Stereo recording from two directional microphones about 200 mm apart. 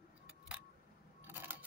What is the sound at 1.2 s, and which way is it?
Scissors, 10° right (ahead or behind).